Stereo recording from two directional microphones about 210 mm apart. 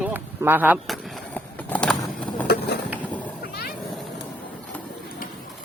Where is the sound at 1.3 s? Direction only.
5° left (ahead or behind).